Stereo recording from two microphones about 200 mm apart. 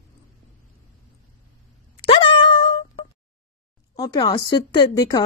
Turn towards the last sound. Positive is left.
turn(degrees=20)  # may be behind; listen again after turning